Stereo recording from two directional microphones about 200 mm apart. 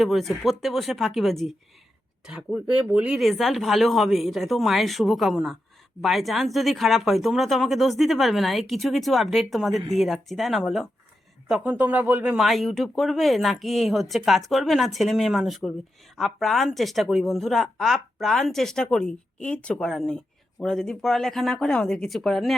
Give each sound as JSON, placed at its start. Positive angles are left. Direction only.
{"t": 0.0, "sound": "a woman's voice", "side_deg": 0}